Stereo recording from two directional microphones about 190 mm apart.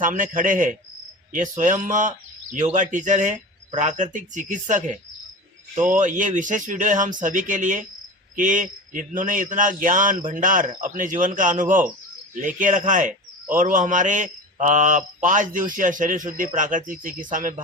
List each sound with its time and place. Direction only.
0.0 s speech: 45° right (ahead or behind)